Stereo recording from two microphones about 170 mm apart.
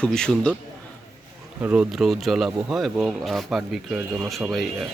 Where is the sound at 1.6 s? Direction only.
5° right (ahead or behind).